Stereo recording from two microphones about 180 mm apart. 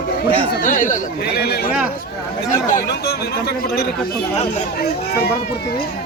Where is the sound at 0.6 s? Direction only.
45° left (ahead or behind).